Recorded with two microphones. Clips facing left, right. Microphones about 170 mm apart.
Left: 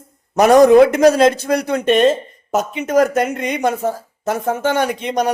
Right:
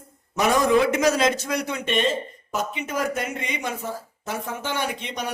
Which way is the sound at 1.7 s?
45° left (ahead or behind).